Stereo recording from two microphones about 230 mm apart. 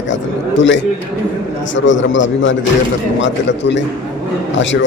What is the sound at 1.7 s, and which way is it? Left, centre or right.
Speech, left.